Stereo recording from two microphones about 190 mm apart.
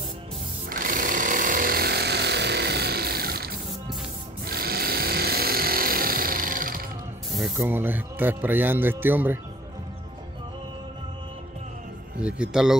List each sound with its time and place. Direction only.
0.7 s jackhammer: 45° right (ahead or behind)
4.5 s sewing machine: 55° right (ahead or behind)
7.5 s speech: 10° right (ahead or behind)
12.2 s a man's voice: 5° right (ahead or behind)